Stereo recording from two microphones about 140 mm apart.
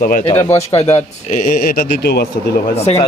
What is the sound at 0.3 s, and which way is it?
Speech, 45° left (ahead or behind).